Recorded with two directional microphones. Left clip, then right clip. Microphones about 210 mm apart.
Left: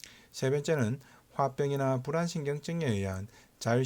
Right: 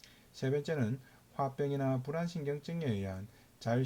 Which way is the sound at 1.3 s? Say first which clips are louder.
Left 5 dB; 35° left (ahead or behind).